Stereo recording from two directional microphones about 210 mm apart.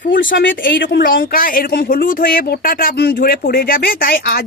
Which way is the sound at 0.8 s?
50° left (ahead or behind).